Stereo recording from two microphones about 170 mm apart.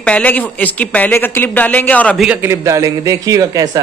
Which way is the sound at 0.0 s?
10° left (ahead or behind).